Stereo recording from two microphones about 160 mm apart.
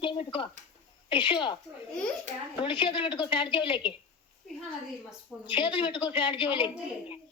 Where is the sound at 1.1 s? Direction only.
30° left (ahead or behind).